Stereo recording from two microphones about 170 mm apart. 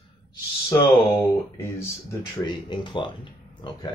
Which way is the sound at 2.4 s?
25° left (ahead or behind).